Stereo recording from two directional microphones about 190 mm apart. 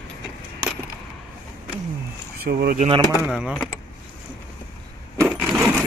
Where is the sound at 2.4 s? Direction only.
55° right (ahead or behind).